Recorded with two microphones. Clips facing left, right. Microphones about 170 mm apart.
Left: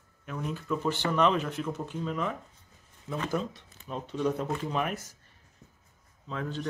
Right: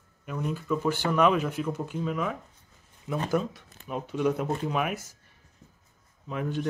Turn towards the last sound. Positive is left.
turn(degrees=-15)  # may be behind; listen again after turning